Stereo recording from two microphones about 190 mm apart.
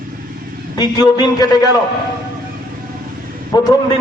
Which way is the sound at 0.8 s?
20° left (ahead or behind).